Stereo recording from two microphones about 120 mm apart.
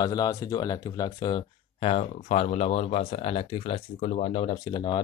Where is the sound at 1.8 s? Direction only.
60° left (ahead or behind).